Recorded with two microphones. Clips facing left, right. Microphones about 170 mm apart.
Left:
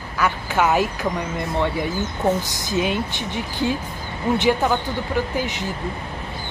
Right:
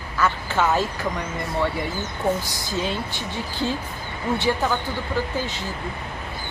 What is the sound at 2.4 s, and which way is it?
Speech, 20° left (ahead or behind).